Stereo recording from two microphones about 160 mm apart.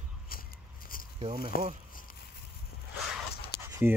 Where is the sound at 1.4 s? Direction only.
65° left (ahead or behind).